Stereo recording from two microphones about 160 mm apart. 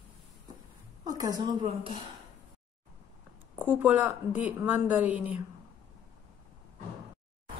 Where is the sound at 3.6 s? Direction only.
10° right (ahead or behind).